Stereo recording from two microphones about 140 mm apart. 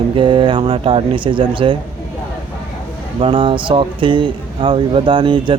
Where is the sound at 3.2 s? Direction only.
40° right (ahead or behind).